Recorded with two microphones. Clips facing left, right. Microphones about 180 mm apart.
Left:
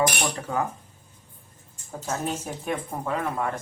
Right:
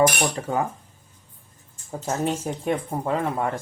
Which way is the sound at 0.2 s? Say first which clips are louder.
Right 3 dB; 30° right (ahead or behind).